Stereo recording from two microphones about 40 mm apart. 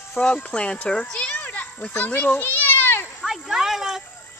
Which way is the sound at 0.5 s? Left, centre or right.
Left.